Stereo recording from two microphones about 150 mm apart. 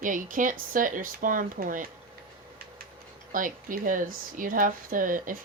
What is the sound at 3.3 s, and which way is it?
A woman's voice, 65° right (ahead or behind).